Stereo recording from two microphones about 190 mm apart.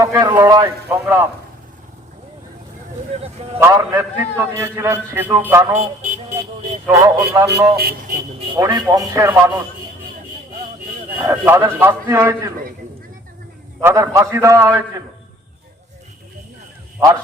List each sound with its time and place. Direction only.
0.0 s a man's voice: 15° right (ahead or behind)
3.1 s speech: 35° right (ahead or behind)
3.6 s a man's voice: 15° right (ahead or behind)
6.8 s a man's voice: 15° right (ahead or behind)
7.8 s speech: 50° right (ahead or behind)
8.5 s a man's voice: 15° right (ahead or behind)
11.2 s a man's voice: 15° right (ahead or behind)
13.8 s a man's voice: 15° right (ahead or behind)